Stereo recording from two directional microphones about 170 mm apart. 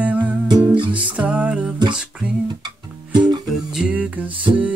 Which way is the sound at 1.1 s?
5° right (ahead or behind).